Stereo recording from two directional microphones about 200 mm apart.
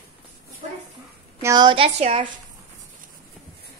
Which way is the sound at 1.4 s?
20° right (ahead or behind).